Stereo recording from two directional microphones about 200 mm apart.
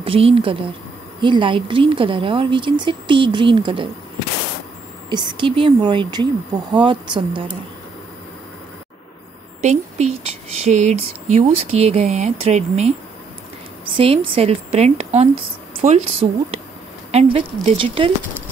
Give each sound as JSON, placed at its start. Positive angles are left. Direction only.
{"t": 0.0, "sound": "speech", "side_deg": -30}
{"t": 5.1, "sound": "speech", "side_deg": -25}
{"t": 9.6, "sound": "speech", "side_deg": -35}